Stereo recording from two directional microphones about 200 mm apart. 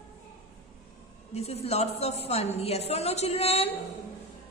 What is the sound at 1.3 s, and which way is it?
A woman's voice, 30° left (ahead or behind).